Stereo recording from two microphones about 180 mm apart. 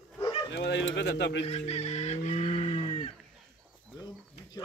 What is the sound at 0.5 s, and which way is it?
Speech, 75° left (ahead or behind).